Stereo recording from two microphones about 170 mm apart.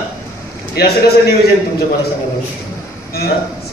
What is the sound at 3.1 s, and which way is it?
Speech, 65° left (ahead or behind).